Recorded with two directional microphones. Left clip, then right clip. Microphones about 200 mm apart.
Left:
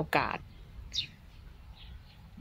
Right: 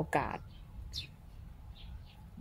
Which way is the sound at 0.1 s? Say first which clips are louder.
Left 5 dB; 10° left (ahead or behind).